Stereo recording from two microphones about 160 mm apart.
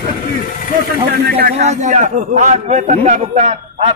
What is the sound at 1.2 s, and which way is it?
Speech, 75° right (ahead or behind).